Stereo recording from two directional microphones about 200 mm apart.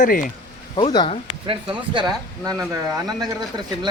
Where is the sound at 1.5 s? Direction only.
25° right (ahead or behind).